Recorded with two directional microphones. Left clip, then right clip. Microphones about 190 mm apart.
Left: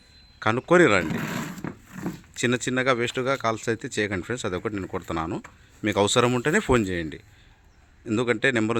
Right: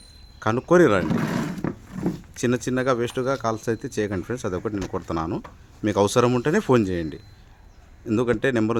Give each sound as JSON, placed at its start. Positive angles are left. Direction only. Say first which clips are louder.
{"t": 0.3, "sound": "speech", "louder": "right 1 dB", "side_deg": 15}
{"t": 1.2, "sound": "vehicle", "louder": "right 4 dB", "side_deg": 0}
{"t": 2.4, "sound": "speech", "louder": "even", "side_deg": 15}